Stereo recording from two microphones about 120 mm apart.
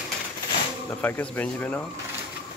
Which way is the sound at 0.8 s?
15° left (ahead or behind).